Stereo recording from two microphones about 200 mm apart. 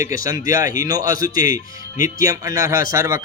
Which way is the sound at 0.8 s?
20° right (ahead or behind).